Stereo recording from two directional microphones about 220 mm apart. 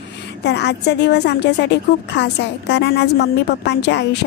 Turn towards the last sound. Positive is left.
turn(degrees=50)  # may be behind; listen again after turning